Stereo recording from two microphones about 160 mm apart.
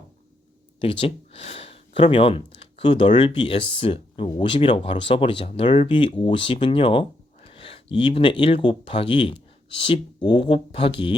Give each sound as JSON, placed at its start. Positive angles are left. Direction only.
{"t": 0.8, "sound": "speech", "side_deg": 35}